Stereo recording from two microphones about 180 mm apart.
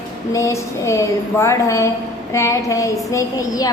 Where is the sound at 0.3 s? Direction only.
15° left (ahead or behind).